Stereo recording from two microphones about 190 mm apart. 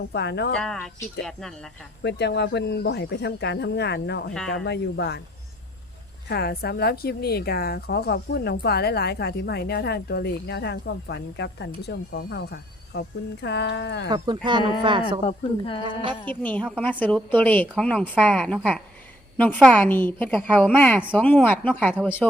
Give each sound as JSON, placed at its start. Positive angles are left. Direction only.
{"t": 0.1, "sound": "a woman's voice", "side_deg": 60}
{"t": 0.5, "sound": "speech", "side_deg": 5}
{"t": 2.0, "sound": "a woman's voice", "side_deg": 60}
{"t": 6.2, "sound": "a woman's voice", "side_deg": 55}
{"t": 14.4, "sound": "speech", "side_deg": -25}
{"t": 15.2, "sound": "speech", "side_deg": 30}
{"t": 16.2, "sound": "a woman's voice", "side_deg": 10}
{"t": 19.8, "sound": "a woman's voice", "side_deg": 10}